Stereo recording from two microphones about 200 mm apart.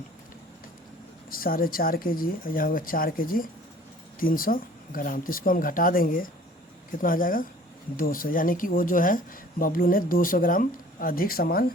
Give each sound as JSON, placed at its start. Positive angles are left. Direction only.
{"t": 1.3, "sound": "speech", "side_deg": 45}